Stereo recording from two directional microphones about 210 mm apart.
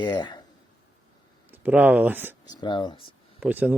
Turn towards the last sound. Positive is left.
turn(degrees=-5)  # may be behind; listen again after turning